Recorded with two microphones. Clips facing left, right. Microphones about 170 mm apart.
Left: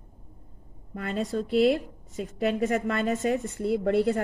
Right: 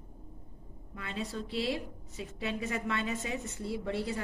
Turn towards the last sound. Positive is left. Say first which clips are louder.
# left 11 dB
turn(degrees=55)  # may be behind; listen again after turning